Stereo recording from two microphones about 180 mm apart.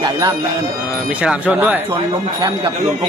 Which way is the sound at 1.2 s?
5° right (ahead or behind).